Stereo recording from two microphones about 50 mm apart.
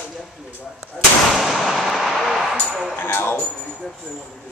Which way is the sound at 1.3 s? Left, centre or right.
Centre.